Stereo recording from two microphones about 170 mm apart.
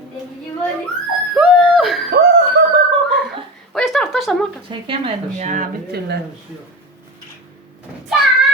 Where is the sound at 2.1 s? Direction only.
75° right (ahead or behind).